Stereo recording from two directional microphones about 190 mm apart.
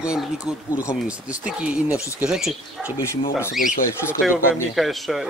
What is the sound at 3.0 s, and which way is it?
Speech, 15° left (ahead or behind).